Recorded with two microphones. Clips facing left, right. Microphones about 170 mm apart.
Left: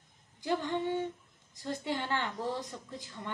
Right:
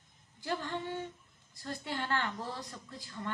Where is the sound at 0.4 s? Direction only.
15° left (ahead or behind).